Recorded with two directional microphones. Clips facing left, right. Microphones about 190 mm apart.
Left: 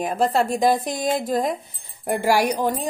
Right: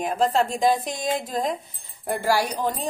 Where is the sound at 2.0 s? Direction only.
15° left (ahead or behind).